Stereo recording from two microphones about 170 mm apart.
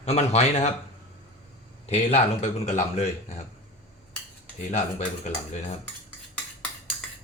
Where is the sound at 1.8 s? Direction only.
40° left (ahead or behind).